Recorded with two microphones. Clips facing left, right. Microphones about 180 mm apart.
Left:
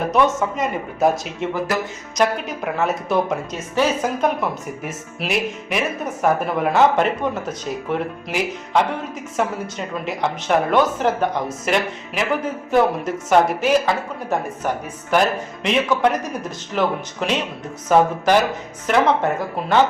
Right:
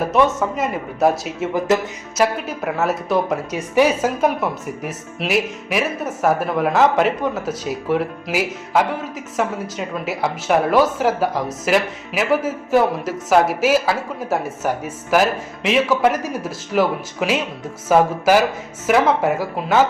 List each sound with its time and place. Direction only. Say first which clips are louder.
0.1 s speech: even; centre (ahead or behind)
1.5 s music: right 6 dB; 20° right (ahead or behind)
2.1 s speech: right 1 dB; 5° right (ahead or behind)